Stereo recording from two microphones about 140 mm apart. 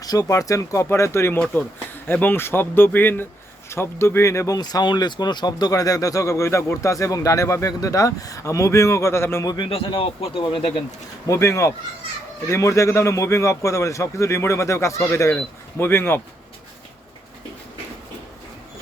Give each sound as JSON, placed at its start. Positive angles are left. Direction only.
{"t": 0.0, "sound": "speech", "side_deg": 25}
{"t": 9.5, "sound": "speech", "side_deg": 35}
{"t": 11.3, "sound": "speech", "side_deg": 20}